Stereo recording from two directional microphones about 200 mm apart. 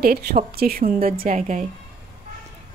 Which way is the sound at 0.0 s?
50° right (ahead or behind).